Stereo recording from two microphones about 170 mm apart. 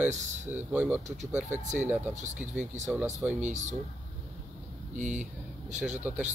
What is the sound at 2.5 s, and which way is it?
Speech, 45° right (ahead or behind).